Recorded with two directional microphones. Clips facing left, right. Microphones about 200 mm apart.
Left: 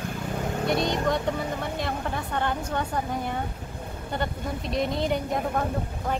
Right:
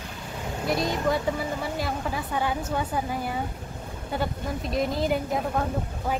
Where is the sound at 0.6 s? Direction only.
Centre (ahead or behind).